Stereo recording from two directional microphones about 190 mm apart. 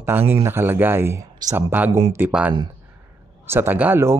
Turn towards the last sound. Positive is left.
turn(degrees=-10)  # may be behind; listen again after turning